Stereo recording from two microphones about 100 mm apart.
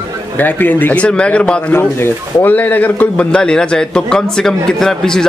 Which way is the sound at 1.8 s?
20° left (ahead or behind).